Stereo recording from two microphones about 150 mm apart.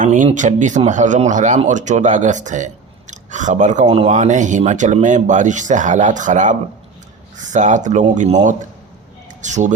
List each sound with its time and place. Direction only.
0.0 s speech: 60° right (ahead or behind)
3.8 s speech: 40° right (ahead or behind)